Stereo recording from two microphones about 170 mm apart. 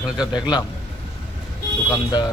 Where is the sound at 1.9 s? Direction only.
25° left (ahead or behind).